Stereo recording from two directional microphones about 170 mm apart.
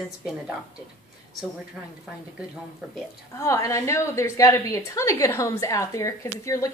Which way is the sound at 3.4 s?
20° left (ahead or behind).